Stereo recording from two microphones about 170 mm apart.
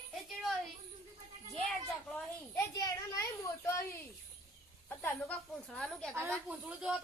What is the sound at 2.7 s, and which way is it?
Speech, 20° left (ahead or behind).